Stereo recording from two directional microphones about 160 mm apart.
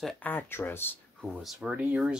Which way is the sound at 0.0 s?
Centre (ahead or behind).